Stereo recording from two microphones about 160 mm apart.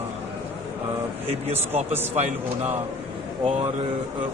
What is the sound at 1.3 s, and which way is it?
Speech, 40° right (ahead or behind).